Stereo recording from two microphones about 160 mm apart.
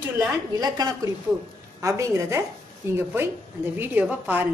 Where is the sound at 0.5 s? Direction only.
25° right (ahead or behind).